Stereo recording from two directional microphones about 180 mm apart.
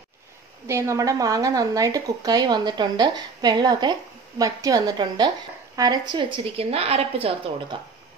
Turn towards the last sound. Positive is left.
turn(degrees=-35)  # may be behind; listen again after turning